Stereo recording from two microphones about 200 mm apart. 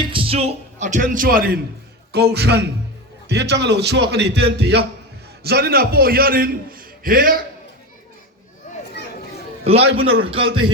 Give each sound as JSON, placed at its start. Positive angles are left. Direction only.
{"t": 0.1, "sound": "a man's voice", "side_deg": -30}
{"t": 9.7, "sound": "a man's voice", "side_deg": -30}